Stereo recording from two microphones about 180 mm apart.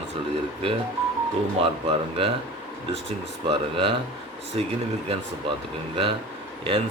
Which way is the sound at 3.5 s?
30° right (ahead or behind).